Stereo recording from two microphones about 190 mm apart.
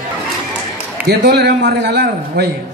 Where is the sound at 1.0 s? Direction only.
60° right (ahead or behind).